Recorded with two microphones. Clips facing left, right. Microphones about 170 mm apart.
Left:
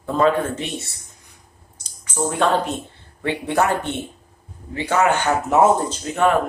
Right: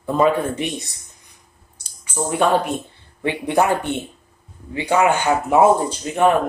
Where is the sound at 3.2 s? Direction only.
15° right (ahead or behind).